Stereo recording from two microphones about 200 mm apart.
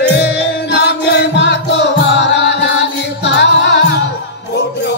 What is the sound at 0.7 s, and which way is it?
Music, 60° left (ahead or behind).